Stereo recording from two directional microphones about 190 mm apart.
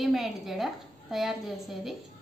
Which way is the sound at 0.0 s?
Centre (ahead or behind).